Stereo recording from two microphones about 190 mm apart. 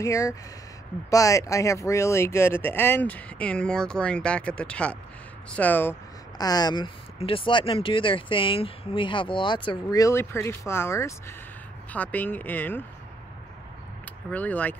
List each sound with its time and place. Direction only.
0.0 s speech: 15° left (ahead or behind)
14.3 s speech: 10° left (ahead or behind)